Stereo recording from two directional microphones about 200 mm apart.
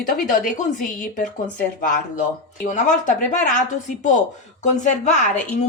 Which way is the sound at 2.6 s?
40° left (ahead or behind).